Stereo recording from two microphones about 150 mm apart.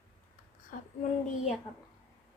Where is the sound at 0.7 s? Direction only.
65° left (ahead or behind).